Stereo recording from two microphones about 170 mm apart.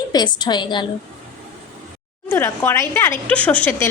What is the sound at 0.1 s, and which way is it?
Speech, 25° left (ahead or behind).